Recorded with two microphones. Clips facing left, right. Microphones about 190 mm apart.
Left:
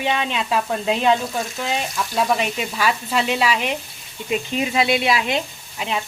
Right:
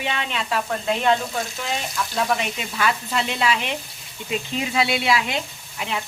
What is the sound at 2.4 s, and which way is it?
Speech, 15° left (ahead or behind).